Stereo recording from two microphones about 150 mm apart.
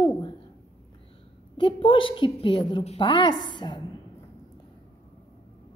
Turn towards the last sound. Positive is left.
turn(degrees=30)  # may be behind; listen again after turning